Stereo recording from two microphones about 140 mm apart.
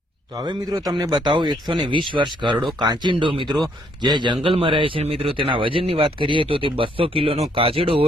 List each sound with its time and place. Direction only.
0.4 s a man's voice: 30° right (ahead or behind)